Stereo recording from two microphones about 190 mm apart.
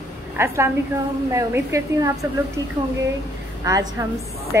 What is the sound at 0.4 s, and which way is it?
Speech, 15° right (ahead or behind).